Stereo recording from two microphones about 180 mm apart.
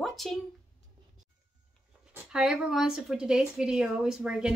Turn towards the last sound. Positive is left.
turn(degrees=-5)  # may be behind; listen again after turning